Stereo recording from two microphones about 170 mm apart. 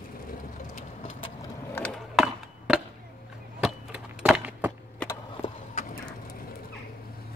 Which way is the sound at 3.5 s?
5° right (ahead or behind).